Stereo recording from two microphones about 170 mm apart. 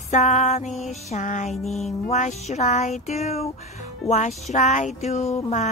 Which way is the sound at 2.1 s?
40° left (ahead or behind).